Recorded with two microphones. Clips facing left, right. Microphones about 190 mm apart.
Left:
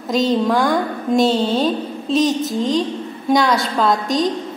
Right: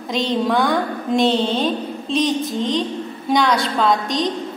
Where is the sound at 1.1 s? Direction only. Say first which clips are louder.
Left 2 dB; 45° left (ahead or behind).